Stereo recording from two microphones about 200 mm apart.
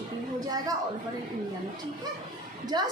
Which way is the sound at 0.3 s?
20° right (ahead or behind).